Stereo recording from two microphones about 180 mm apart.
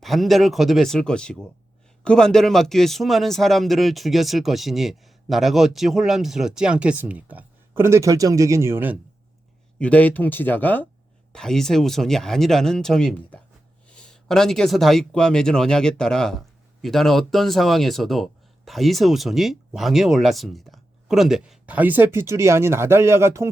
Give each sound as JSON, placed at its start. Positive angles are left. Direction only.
{"t": 0.0, "sound": "a man's voice", "side_deg": 0}
{"t": 9.7, "sound": "a man's voice", "side_deg": 5}